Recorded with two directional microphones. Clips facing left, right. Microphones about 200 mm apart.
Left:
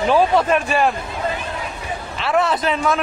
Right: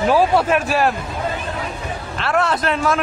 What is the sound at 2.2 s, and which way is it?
Speech, centre (ahead or behind).